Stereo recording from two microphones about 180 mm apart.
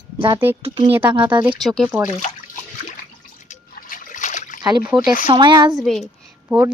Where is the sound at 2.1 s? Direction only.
40° left (ahead or behind).